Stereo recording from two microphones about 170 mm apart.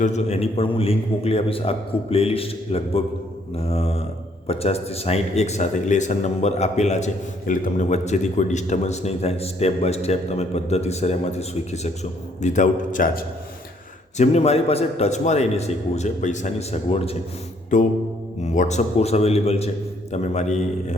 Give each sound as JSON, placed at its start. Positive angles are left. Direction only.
{"t": 0.0, "sound": "a man's voice", "side_deg": 40}
{"t": 14.2, "sound": "speech", "side_deg": 40}
{"t": 17.7, "sound": "a man's voice", "side_deg": 45}